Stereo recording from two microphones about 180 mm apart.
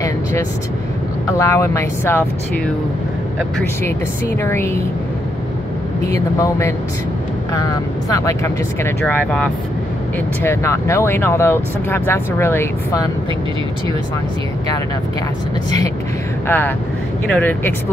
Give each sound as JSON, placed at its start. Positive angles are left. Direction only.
{"t": 1.4, "sound": "speech", "side_deg": 15}
{"t": 4.4, "sound": "speech", "side_deg": 15}
{"t": 7.5, "sound": "speech", "side_deg": 20}
{"t": 16.4, "sound": "speech", "side_deg": 10}